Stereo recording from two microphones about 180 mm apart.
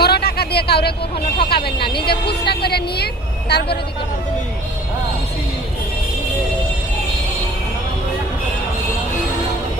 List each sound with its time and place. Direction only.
0.0 s a sound: 60° left (ahead or behind)
1.4 s vehicle: 60° left (ahead or behind)
3.5 s a woman's voice: 65° left (ahead or behind)